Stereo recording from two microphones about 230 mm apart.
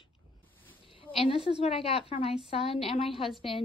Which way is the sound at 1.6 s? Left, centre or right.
Left.